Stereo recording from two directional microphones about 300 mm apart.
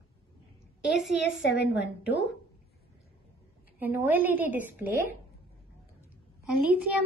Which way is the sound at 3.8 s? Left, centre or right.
Centre.